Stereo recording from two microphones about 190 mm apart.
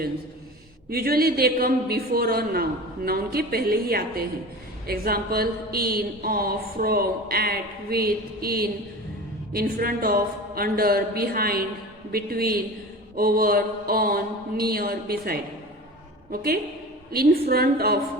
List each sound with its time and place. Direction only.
0.9 s a woman's voice: 55° right (ahead or behind)